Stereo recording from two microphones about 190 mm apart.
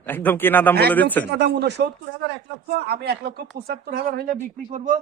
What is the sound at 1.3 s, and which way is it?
Speech, 60° right (ahead or behind).